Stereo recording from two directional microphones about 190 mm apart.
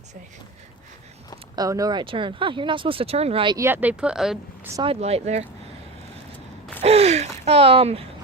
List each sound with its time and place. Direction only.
1.5 s speech: 20° right (ahead or behind)
4.8 s speech: 30° right (ahead or behind)
6.8 s speech: 35° right (ahead or behind)